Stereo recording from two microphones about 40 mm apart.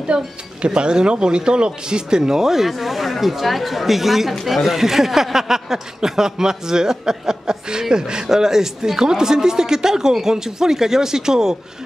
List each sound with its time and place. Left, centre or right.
0.1 s speech: right